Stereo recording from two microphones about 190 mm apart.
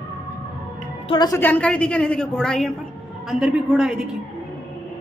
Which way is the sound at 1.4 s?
5° left (ahead or behind).